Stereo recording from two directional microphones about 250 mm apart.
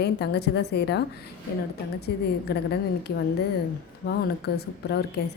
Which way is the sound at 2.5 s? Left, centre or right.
Left.